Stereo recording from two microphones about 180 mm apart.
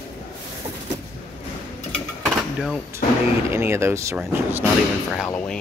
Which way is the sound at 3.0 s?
50° left (ahead or behind).